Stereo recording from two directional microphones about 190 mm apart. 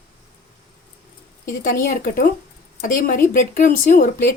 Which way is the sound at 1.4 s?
45° left (ahead or behind).